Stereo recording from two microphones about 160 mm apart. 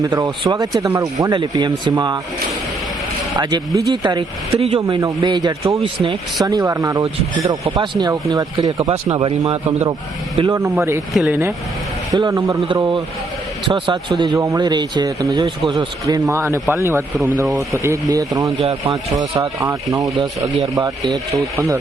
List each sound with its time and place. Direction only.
0.0 s speech: 25° right (ahead or behind)
3.3 s a man's voice: 25° right (ahead or behind)
4.9 s a man's voice: 25° right (ahead or behind)
10.5 s speech: 20° right (ahead or behind)
11.1 s speech: 5° right (ahead or behind)
12.1 s a man's voice: 20° right (ahead or behind)
18.6 s a man's voice: 40° right (ahead or behind)
19.2 s speech: 20° right (ahead or behind)